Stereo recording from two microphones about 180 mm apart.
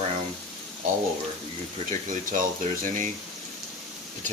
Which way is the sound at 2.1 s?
45° right (ahead or behind).